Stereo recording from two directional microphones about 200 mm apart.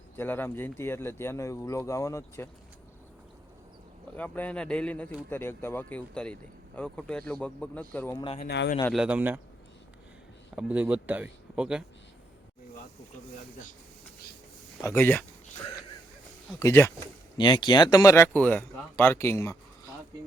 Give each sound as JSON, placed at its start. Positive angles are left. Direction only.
{"t": 0.2, "sound": "speech", "side_deg": 10}
{"t": 4.1, "sound": "speech", "side_deg": 10}
{"t": 8.1, "sound": "speech", "side_deg": 25}
{"t": 8.4, "sound": "speech", "side_deg": 55}
{"t": 8.9, "sound": "speech", "side_deg": -5}
{"t": 10.5, "sound": "speech", "side_deg": -5}
{"t": 14.8, "sound": "speech", "side_deg": 10}
{"t": 16.6, "sound": "speech", "side_deg": 15}